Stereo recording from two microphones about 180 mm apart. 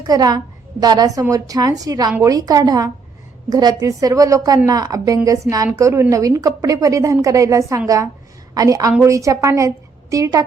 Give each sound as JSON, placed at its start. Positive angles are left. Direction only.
{"t": 0.0, "sound": "a woman's voice", "side_deg": -20}